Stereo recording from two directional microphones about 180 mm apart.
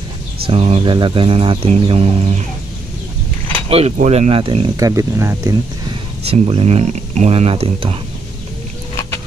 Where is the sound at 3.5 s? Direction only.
35° right (ahead or behind).